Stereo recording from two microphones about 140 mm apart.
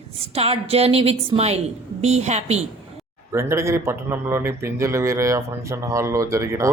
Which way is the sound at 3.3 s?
20° right (ahead or behind).